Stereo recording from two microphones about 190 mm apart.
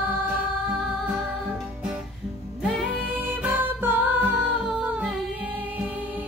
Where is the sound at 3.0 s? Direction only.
10° right (ahead or behind).